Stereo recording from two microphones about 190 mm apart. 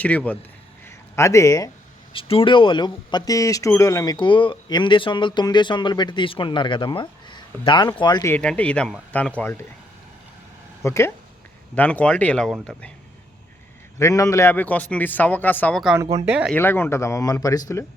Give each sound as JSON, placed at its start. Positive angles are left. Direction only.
{"t": 0.0, "sound": "a man's voice", "side_deg": 5}
{"t": 2.1, "sound": "speech", "side_deg": 30}
{"t": 8.3, "sound": "a man's voice", "side_deg": 5}
{"t": 10.8, "sound": "a man's voice", "side_deg": 15}
{"t": 14.0, "sound": "a man's voice", "side_deg": 15}
{"t": 16.5, "sound": "a man's voice", "side_deg": 10}